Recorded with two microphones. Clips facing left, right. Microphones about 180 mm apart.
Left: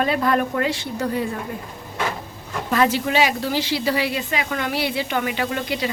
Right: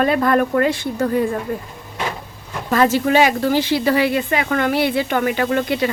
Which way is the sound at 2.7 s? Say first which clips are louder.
Right 4 dB; 45° right (ahead or behind).